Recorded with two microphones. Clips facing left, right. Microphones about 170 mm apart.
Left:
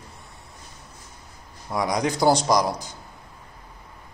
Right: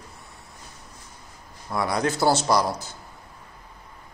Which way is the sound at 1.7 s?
15° left (ahead or behind).